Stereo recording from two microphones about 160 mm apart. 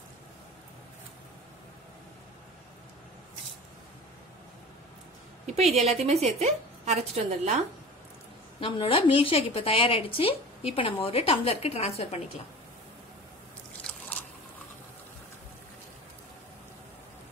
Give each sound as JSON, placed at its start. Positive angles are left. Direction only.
{"t": 5.5, "sound": "a woman's voice", "side_deg": -45}
{"t": 8.5, "sound": "a woman's voice", "side_deg": 35}